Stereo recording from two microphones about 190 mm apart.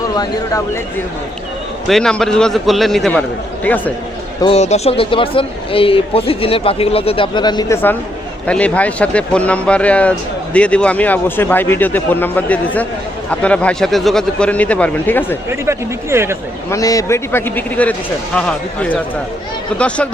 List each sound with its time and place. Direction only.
0.1 s speech: 20° left (ahead or behind)
1.9 s a man's voice: 5° left (ahead or behind)
4.4 s speech: 30° left (ahead or behind); by 15.4 s 10° left (ahead or behind)
15.4 s speech: 15° right (ahead or behind)
16.6 s a man's voice: 15° left (ahead or behind)